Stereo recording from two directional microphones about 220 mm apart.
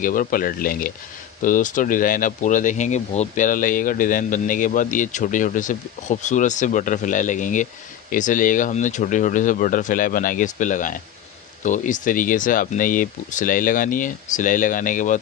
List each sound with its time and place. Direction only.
0.0 s speech: 40° left (ahead or behind)